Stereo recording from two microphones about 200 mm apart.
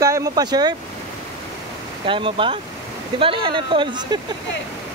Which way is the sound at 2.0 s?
25° right (ahead or behind).